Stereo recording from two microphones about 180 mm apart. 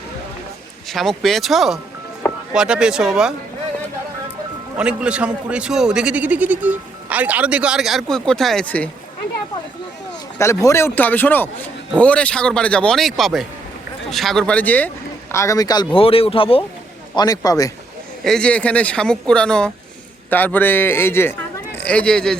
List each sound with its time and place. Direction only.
0.9 s speech: centre (ahead or behind)
4.8 s speech: 5° right (ahead or behind)
10.3 s a man's voice: 15° left (ahead or behind)
16.0 s speech: 30° left (ahead or behind)
17.2 s a man's voice: 20° left (ahead or behind)
18.2 s a man's voice: 5° left (ahead or behind)